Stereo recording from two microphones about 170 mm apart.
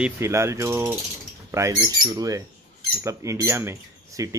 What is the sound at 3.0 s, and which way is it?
Mechanisms, 15° right (ahead or behind).